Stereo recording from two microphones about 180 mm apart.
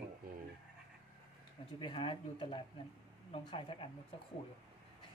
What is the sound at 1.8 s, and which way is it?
Speech, 30° left (ahead or behind).